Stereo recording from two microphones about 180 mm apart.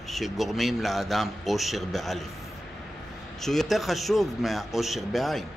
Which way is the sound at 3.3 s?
Centre (ahead or behind).